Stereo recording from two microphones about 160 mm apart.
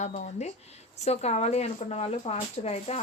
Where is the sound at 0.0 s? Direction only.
45° left (ahead or behind).